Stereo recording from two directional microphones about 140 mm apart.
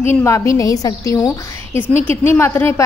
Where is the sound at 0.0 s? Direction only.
20° left (ahead or behind).